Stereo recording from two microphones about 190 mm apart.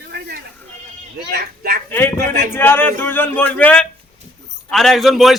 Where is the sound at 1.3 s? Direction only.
55° right (ahead or behind).